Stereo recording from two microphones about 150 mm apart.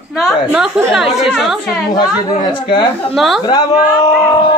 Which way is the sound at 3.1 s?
Centre (ahead or behind).